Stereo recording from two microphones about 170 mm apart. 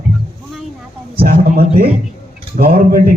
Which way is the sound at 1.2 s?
60° right (ahead or behind).